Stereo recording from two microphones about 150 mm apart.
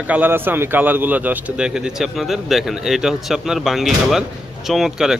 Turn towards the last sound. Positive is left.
turn(degrees=-5)  # may be behind; listen again after turning